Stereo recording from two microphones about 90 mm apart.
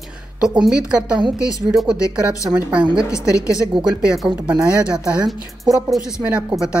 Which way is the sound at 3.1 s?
35° left (ahead or behind).